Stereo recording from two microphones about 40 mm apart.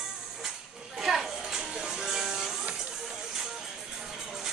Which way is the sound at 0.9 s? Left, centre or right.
Centre.